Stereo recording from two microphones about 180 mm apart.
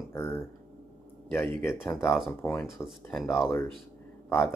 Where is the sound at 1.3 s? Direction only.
15° left (ahead or behind).